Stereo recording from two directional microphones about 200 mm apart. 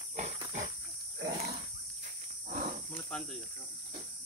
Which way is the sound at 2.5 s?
40° right (ahead or behind).